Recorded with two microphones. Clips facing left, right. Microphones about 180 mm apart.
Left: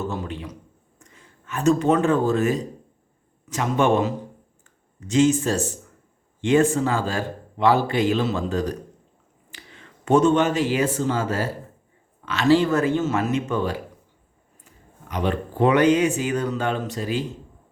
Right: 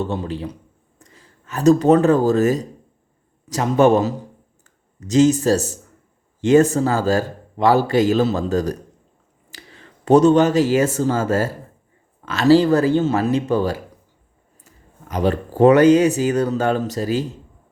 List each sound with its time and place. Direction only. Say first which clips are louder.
0.0 s speech: right 5 dB; 30° right (ahead or behind)